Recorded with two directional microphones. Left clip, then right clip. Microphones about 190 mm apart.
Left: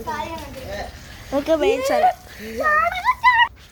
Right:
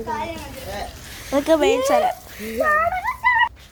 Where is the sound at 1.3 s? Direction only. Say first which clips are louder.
Right 2 dB; 20° right (ahead or behind).